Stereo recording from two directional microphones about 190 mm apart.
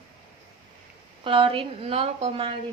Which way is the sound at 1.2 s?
25° right (ahead or behind).